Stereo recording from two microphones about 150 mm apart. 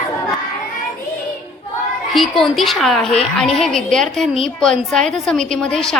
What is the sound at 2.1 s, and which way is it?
A woman's voice, centre (ahead or behind).